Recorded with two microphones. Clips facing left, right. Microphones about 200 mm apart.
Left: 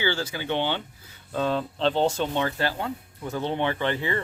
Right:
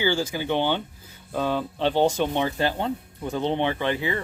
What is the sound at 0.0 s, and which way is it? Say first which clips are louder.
Speech: right 3 dB; 10° right (ahead or behind).